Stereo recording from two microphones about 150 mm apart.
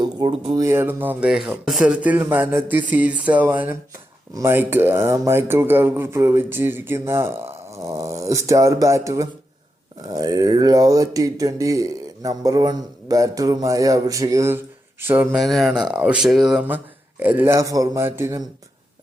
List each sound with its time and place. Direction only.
0.0 s speech: 30° right (ahead or behind)
0.6 s speech: 15° right (ahead or behind)
15.4 s speech: centre (ahead or behind); by 18.4 s 15° right (ahead or behind)